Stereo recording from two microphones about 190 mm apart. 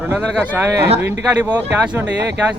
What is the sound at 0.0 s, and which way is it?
Speech, 10° right (ahead or behind).